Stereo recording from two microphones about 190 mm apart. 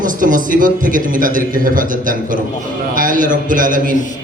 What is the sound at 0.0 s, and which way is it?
A man's voice, 45° right (ahead or behind).